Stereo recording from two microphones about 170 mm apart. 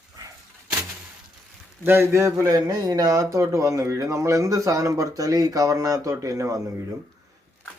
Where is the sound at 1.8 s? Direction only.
15° right (ahead or behind).